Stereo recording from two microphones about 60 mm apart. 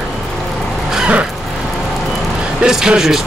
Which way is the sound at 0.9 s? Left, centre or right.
Centre.